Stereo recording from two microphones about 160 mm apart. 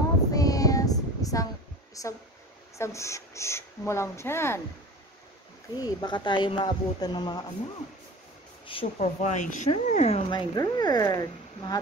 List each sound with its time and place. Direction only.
0.3 s child singing: 20° left (ahead or behind)
2.0 s speech: 20° left (ahead or behind)
5.8 s speech: 25° left (ahead or behind)
8.6 s speech: 40° left (ahead or behind)
10.3 s speech: 25° left (ahead or behind)